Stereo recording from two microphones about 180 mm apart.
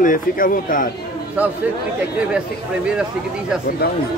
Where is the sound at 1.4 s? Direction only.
10° right (ahead or behind).